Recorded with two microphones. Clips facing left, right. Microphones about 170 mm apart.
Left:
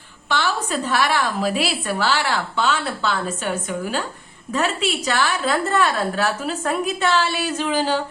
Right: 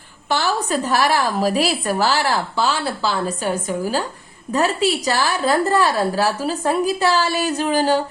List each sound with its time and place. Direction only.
0.3 s a woman's voice: 40° right (ahead or behind)